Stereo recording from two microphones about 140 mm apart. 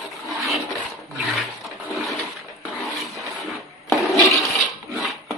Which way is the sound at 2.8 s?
Centre (ahead or behind).